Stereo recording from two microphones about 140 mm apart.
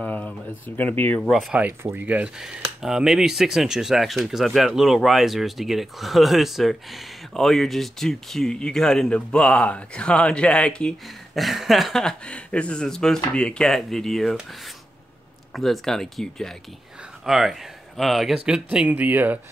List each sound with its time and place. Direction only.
0.0 s a sound: 10° left (ahead or behind)
0.7 s speech: 15° left (ahead or behind)
1.3 s speech: centre (ahead or behind)
1.6 s speech: 15° right (ahead or behind); by 14.4 s centre (ahead or behind)
15.5 s speech: centre (ahead or behind)